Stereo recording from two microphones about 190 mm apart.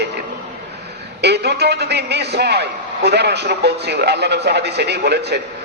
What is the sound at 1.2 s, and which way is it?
A man's voice, 60° right (ahead or behind).